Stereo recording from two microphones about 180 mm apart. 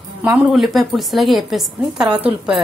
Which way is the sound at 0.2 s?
5° right (ahead or behind).